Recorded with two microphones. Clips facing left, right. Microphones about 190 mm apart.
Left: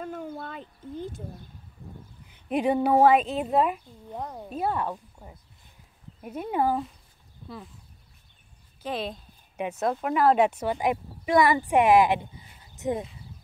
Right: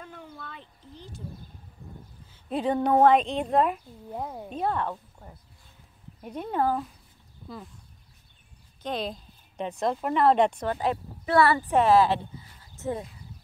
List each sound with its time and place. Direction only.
0.0 s a sound: 45° left (ahead or behind)
2.2 s speech: 15° left (ahead or behind); by 4.6 s 5° right (ahead or behind)
4.6 s speech: 10° left (ahead or behind)
7.4 s speech: centre (ahead or behind)
8.8 s speech: 5° left (ahead or behind)